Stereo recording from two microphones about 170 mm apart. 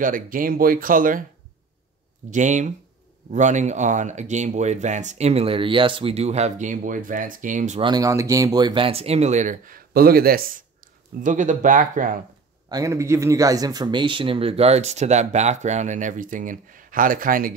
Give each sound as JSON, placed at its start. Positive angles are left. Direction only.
{"t": 0.0, "sound": "speech", "side_deg": -55}
{"t": 2.3, "sound": "speech", "side_deg": -45}
{"t": 7.8, "sound": "speech", "side_deg": -20}
{"t": 12.6, "sound": "speech", "side_deg": -20}